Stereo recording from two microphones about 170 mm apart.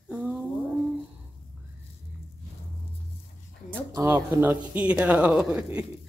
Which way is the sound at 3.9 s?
15° right (ahead or behind).